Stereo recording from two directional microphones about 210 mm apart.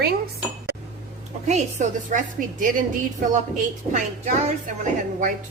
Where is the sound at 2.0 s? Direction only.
40° right (ahead or behind).